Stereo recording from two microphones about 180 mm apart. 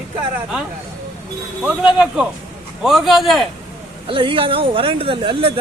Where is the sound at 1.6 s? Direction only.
5° right (ahead or behind).